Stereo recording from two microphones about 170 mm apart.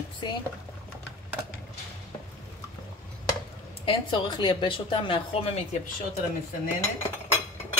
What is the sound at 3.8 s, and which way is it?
Speech, 30° left (ahead or behind).